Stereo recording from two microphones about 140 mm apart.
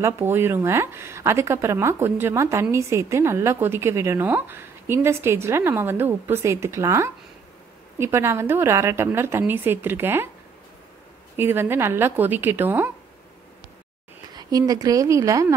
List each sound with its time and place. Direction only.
0.0 s a woman's voice: 15° right (ahead or behind)
11.3 s a woman's voice: 15° right (ahead or behind)
14.3 s speech: 30° right (ahead or behind)